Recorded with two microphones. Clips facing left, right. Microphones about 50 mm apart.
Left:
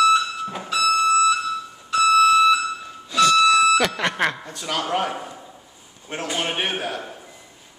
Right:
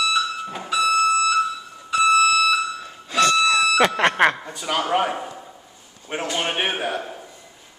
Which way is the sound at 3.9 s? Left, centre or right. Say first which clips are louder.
Right 5 dB; right.